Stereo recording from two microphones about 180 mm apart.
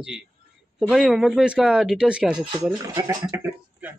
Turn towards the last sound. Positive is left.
turn(degrees=-20)  # may be behind; listen again after turning